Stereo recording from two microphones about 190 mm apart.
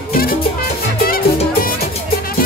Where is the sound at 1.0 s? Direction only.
50° left (ahead or behind).